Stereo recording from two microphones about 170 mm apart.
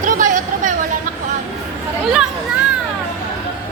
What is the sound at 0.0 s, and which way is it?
Chatter, 50° right (ahead or behind).